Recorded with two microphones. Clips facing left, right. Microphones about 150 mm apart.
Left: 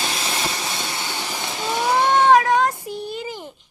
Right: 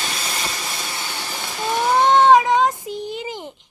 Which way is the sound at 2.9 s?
15° right (ahead or behind).